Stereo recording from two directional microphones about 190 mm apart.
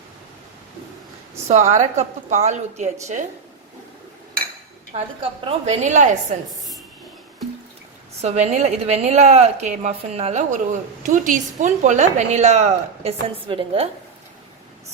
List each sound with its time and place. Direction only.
1.5 s a woman's voice: 35° right (ahead or behind)
4.9 s a woman's voice: 30° right (ahead or behind)
8.2 s a woman's voice: 35° right (ahead or behind)